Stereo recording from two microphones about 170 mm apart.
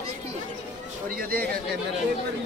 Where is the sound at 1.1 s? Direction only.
60° right (ahead or behind).